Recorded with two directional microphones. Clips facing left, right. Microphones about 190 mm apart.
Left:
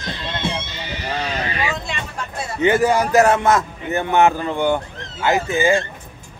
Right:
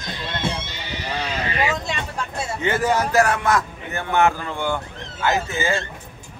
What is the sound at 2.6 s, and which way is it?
A man's voice, 15° left (ahead or behind).